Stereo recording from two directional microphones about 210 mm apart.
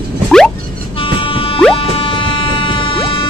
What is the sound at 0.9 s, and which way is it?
Music, 25° left (ahead or behind).